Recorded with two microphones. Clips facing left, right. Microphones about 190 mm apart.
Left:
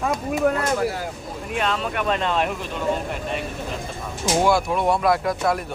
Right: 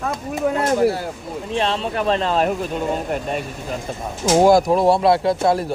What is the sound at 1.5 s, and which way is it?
Speech, 30° right (ahead or behind).